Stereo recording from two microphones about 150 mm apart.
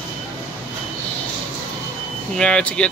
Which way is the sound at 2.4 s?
5° left (ahead or behind).